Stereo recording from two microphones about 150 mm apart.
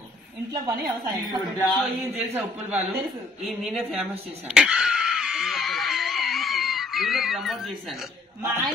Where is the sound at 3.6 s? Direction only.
Centre (ahead or behind).